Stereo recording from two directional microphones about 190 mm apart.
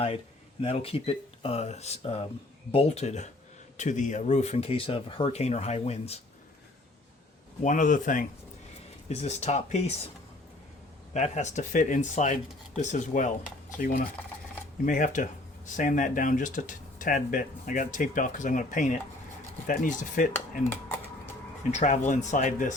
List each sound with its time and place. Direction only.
0.6 s speech: 30° left (ahead or behind)
7.6 s speech: 45° left (ahead or behind)
11.1 s speech: 35° left (ahead or behind)
21.7 s speech: 40° left (ahead or behind)